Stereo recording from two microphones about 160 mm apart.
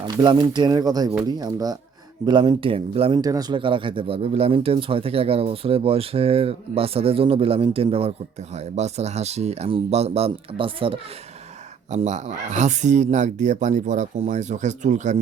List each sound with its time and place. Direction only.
0.2 s speech: 25° right (ahead or behind)
3.2 s speech: 25° right (ahead or behind)
11.9 s speech: 45° right (ahead or behind)